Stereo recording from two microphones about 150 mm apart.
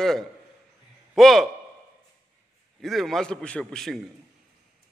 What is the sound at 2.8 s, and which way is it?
A man's voice, centre (ahead or behind).